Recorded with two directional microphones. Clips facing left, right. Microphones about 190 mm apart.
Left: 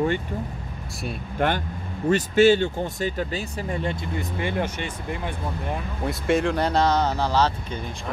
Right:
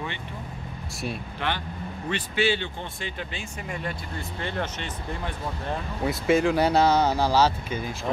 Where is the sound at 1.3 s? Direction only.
50° left (ahead or behind); by 4.0 s 30° left (ahead or behind).